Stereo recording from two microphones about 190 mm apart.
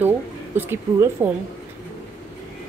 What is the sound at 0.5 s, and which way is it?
Speech, 10° right (ahead or behind).